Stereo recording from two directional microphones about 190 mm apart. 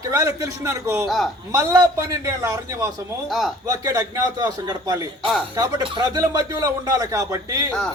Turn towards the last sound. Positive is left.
turn(degrees=-15)  # may be behind; listen again after turning